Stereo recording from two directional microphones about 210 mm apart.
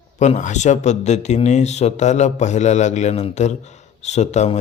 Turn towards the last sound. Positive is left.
turn(degrees=35)  # may be behind; listen again after turning